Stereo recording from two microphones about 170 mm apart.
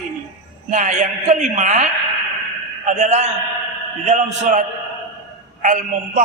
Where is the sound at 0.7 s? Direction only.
45° right (ahead or behind).